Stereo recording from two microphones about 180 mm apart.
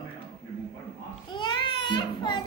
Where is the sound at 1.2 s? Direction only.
25° left (ahead or behind).